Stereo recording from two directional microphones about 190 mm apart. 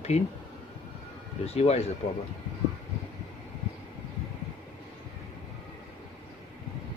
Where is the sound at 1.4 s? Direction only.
35° left (ahead or behind).